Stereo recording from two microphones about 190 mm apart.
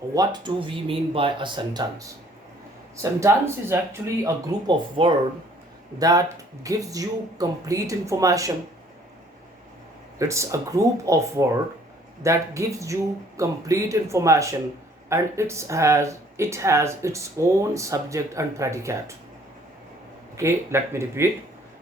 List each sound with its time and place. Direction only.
0.1 s speech: 20° right (ahead or behind)
10.2 s speech: 15° right (ahead or behind)
20.3 s speech: 15° right (ahead or behind)